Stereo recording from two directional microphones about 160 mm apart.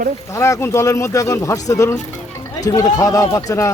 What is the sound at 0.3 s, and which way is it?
Speech, 20° left (ahead or behind).